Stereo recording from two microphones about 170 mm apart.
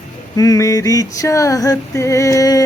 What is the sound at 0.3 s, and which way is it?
Female singing, 20° left (ahead or behind).